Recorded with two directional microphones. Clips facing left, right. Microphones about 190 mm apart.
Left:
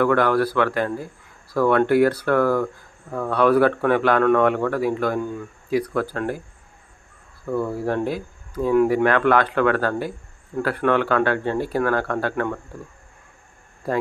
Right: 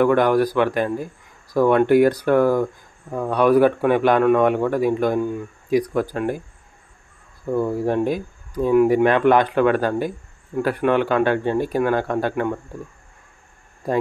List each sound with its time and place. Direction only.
0.0 s speech: 15° right (ahead or behind)
7.5 s speech: 15° right (ahead or behind)
13.8 s speech: 15° right (ahead or behind)